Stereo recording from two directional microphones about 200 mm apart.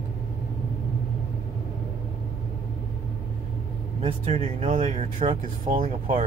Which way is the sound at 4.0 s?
30° right (ahead or behind).